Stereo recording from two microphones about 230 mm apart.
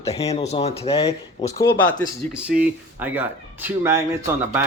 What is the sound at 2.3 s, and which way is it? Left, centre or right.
Speech, centre.